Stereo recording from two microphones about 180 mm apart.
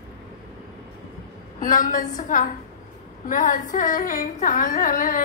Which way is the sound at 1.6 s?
45° left (ahead or behind).